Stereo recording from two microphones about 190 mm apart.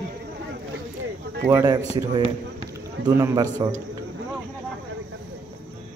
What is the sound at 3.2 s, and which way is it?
Speech, 10° right (ahead or behind).